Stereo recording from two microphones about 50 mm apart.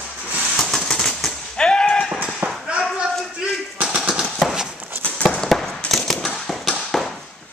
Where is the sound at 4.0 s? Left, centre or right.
Centre.